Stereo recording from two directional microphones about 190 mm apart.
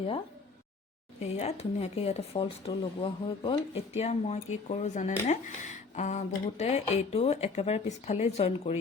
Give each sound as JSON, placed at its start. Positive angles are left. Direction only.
{"t": 1.2, "sound": "speech", "side_deg": 35}